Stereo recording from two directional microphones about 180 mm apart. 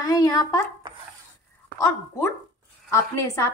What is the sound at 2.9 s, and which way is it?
Speech, 15° left (ahead or behind).